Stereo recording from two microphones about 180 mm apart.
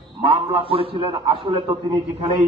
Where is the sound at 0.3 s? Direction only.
30° right (ahead or behind).